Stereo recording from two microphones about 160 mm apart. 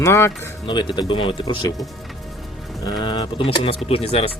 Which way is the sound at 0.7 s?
30° left (ahead or behind).